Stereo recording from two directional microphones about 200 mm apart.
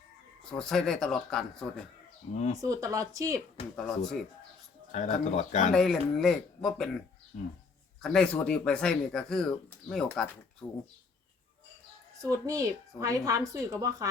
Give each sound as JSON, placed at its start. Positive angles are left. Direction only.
{"t": 0.4, "sound": "speech", "side_deg": 5}
{"t": 2.3, "sound": "speech", "side_deg": 35}
{"t": 2.6, "sound": "a woman's voice", "side_deg": -15}
{"t": 3.8, "sound": "speech", "side_deg": 0}
{"t": 4.9, "sound": "speech", "side_deg": 35}
{"t": 5.7, "sound": "speech", "side_deg": 5}
{"t": 8.0, "sound": "speech", "side_deg": 5}
{"t": 10.6, "sound": "speech", "side_deg": 15}
{"t": 12.2, "sound": "a woman's voice", "side_deg": -15}